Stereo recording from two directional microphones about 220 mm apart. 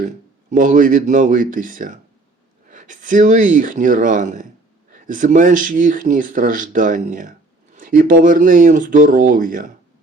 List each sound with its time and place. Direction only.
0.5 s speech: 35° right (ahead or behind)